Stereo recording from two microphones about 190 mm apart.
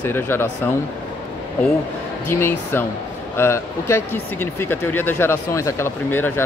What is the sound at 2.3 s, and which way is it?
Speech, 10° left (ahead or behind).